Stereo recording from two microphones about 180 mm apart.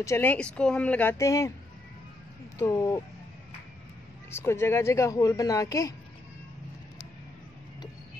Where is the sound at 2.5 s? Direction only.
15° left (ahead or behind).